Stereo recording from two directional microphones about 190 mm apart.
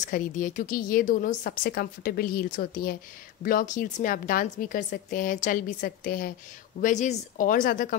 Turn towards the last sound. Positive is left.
turn(degrees=45)  # may be behind; listen again after turning